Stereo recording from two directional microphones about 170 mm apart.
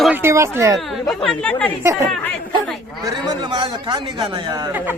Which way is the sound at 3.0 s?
25° right (ahead or behind).